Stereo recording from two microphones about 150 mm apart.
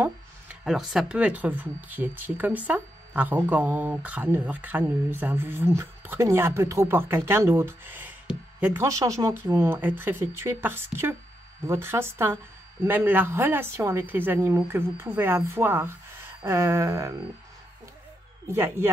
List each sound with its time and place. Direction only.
0.7 s speech: centre (ahead or behind); by 17.1 s 20° right (ahead or behind)
18.5 s speech: 15° right (ahead or behind)